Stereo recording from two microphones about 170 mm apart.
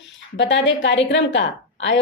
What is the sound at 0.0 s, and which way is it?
Speech, 90° left.